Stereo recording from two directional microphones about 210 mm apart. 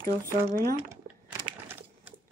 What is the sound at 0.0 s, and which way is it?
Speech, 40° right (ahead or behind).